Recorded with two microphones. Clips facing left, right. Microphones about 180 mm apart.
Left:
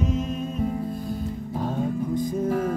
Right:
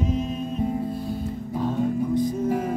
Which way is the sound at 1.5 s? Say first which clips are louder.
Right 3 dB; 45° left (ahead or behind).